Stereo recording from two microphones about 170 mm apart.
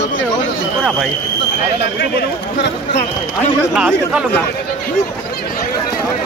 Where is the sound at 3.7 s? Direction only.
5° right (ahead or behind).